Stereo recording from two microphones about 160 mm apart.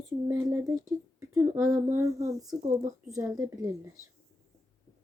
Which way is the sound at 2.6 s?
50° right (ahead or behind).